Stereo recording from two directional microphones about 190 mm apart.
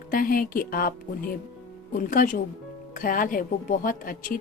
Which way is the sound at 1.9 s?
45° left (ahead or behind).